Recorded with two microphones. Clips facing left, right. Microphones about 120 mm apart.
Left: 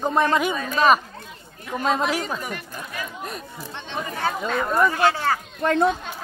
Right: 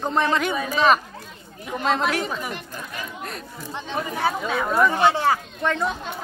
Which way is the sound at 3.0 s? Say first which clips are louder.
Left 2 dB; 10° left (ahead or behind).